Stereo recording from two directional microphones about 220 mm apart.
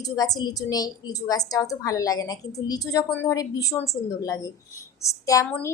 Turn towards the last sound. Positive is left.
turn(degrees=15)  # may be behind; listen again after turning